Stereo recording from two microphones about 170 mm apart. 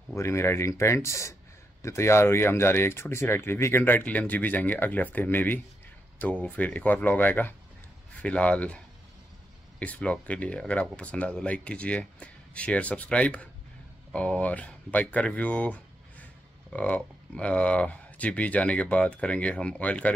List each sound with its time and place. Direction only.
0.1 s speech: 15° left (ahead or behind)